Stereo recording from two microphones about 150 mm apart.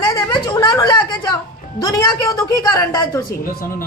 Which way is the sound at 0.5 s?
20° left (ahead or behind).